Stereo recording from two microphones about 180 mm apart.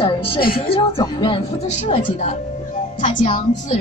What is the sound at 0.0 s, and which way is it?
Speech, 30° left (ahead or behind).